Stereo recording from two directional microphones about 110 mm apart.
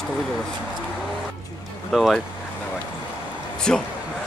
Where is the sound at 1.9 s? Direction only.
Centre (ahead or behind).